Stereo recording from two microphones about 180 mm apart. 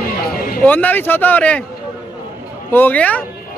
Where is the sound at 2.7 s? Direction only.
10° left (ahead or behind).